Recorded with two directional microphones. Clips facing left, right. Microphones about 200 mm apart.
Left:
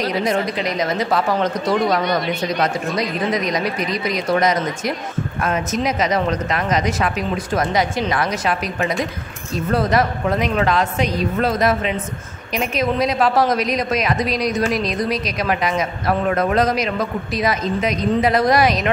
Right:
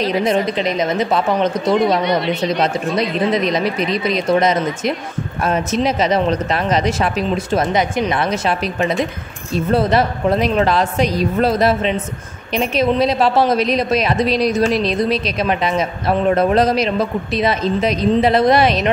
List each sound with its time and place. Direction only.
0.0 s a woman's voice: 25° right (ahead or behind)